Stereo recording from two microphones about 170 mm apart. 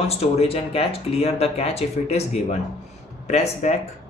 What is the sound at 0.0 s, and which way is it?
Speech, 35° left (ahead or behind).